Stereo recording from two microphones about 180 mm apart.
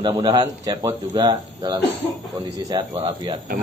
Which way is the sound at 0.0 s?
25° right (ahead or behind).